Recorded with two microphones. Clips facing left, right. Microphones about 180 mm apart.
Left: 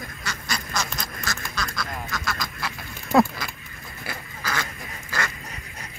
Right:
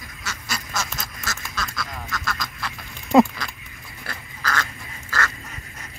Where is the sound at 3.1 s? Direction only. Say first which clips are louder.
Right 4 dB; 15° right (ahead or behind).